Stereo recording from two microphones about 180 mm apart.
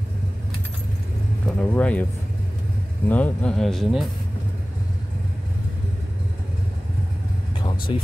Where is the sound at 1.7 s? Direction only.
10° left (ahead or behind).